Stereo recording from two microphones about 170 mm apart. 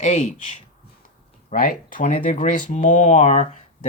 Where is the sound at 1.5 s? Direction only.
55° left (ahead or behind).